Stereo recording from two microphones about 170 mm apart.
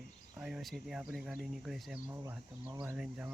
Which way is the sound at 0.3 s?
5° right (ahead or behind).